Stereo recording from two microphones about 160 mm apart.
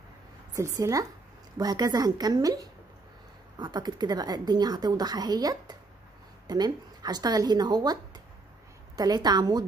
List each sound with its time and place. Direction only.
0.5 s a woman's voice: 20° right (ahead or behind)